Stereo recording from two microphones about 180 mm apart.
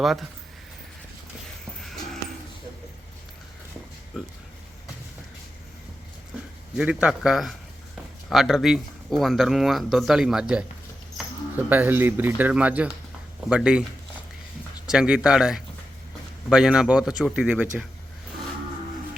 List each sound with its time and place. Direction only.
0.0 s speech: centre (ahead or behind)
6.7 s speech: 5° right (ahead or behind)
11.7 s speech: 10° right (ahead or behind)
14.8 s speech: 5° right (ahead or behind)